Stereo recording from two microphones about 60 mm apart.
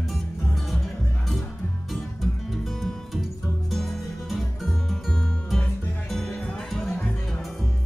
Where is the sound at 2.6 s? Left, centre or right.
Centre.